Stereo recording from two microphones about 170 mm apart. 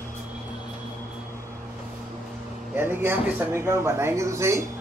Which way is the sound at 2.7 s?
10° right (ahead or behind).